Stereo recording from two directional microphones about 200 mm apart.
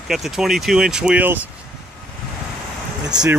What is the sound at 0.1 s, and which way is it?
Speech, centre (ahead or behind).